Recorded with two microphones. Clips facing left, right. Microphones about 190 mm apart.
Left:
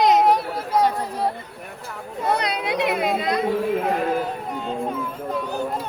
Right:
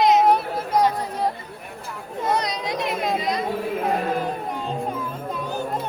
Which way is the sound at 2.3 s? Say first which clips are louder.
Left 2 dB; 60° left (ahead or behind).